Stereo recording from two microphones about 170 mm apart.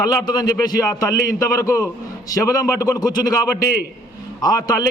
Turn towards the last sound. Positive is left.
turn(degrees=25)  # may be behind; listen again after turning